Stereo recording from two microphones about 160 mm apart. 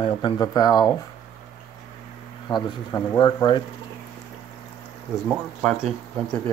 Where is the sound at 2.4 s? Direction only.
25° left (ahead or behind).